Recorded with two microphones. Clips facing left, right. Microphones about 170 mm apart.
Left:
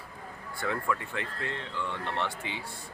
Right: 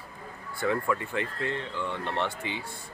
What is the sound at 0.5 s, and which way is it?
Speech, 5° right (ahead or behind).